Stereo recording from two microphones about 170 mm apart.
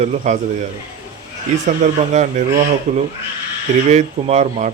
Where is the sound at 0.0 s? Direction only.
45° right (ahead or behind).